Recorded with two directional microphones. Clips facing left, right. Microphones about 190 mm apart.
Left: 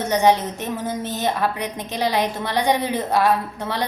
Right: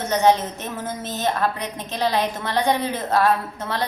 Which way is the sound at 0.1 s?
15° left (ahead or behind).